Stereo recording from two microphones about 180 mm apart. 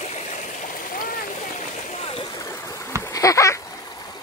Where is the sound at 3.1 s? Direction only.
20° left (ahead or behind).